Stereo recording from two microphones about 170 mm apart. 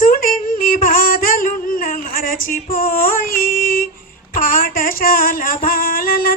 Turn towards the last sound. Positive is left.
turn(degrees=55)  # may be behind; listen again after turning